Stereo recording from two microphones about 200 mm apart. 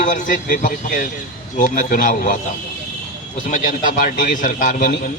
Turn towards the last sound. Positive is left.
turn(degrees=45)  # may be behind; listen again after turning